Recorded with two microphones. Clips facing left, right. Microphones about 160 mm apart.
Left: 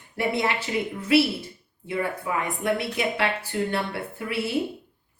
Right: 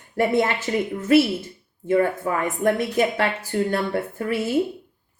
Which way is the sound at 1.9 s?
45° right (ahead or behind).